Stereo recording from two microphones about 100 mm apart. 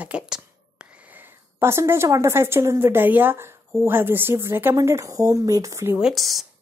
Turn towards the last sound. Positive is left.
turn(degrees=0)  # may be behind; listen again after turning